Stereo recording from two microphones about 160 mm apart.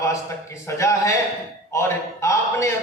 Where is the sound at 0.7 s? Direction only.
20° left (ahead or behind).